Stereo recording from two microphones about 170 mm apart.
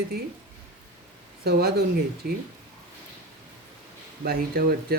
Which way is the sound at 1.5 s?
65° right (ahead or behind).